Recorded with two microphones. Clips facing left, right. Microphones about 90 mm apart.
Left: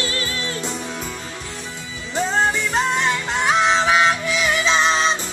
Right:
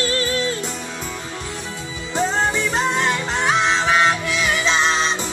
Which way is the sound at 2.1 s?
15° right (ahead or behind).